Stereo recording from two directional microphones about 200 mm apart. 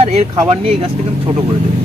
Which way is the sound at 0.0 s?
30° right (ahead or behind).